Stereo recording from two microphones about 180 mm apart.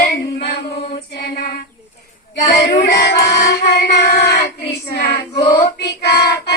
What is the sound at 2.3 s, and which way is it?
Speech, 65° left (ahead or behind).